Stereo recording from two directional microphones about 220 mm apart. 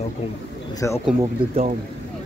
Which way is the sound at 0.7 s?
15° left (ahead or behind).